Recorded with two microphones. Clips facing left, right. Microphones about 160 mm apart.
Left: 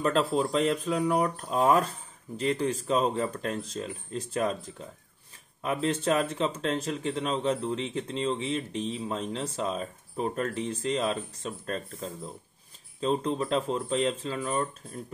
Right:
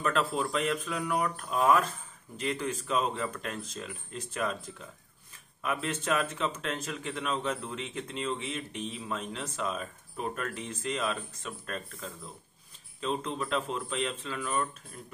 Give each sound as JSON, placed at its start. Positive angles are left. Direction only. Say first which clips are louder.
{"t": 0.0, "sound": "speech", "louder": "left 4 dB", "side_deg": 30}